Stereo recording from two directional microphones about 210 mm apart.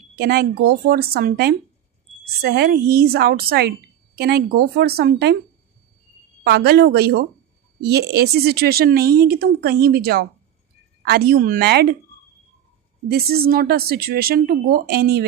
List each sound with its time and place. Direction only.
0.2 s a woman's voice: 50° right (ahead or behind)
6.4 s a woman's voice: 50° right (ahead or behind)
13.1 s a woman's voice: 50° right (ahead or behind)